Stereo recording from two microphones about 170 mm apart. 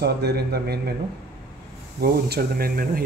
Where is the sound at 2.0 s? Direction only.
65° right (ahead or behind).